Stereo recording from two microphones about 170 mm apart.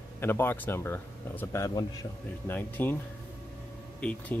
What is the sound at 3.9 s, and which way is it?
Speech, 5° left (ahead or behind).